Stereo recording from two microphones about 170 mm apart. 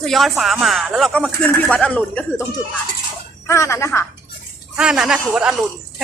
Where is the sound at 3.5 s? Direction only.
15° left (ahead or behind).